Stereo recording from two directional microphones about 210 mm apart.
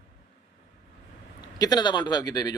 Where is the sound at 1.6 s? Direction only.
20° left (ahead or behind).